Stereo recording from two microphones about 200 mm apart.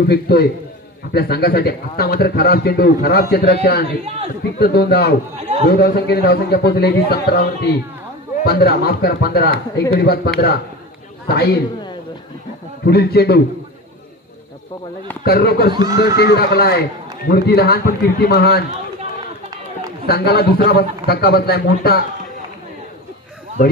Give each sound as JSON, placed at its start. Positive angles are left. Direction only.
{"t": 0.1, "sound": "a man's voice", "side_deg": 50}
{"t": 8.5, "sound": "a man's voice", "side_deg": 50}
{"t": 12.8, "sound": "a man's voice", "side_deg": 55}
{"t": 15.2, "sound": "a man's voice", "side_deg": 50}
{"t": 15.7, "sound": "speech", "side_deg": -20}
{"t": 16.2, "sound": "a man's voice", "side_deg": 50}
{"t": 20.1, "sound": "a man's voice", "side_deg": 50}